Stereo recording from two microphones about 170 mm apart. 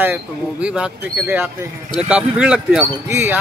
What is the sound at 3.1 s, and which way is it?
Speech, 15° right (ahead or behind).